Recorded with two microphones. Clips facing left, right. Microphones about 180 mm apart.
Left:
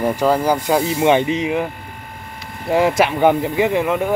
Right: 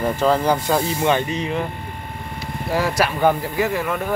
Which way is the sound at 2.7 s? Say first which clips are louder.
Left 5 dB; 20° left (ahead or behind).